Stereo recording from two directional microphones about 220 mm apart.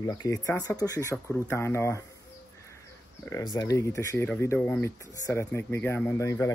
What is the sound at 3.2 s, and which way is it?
Speech, 15° left (ahead or behind).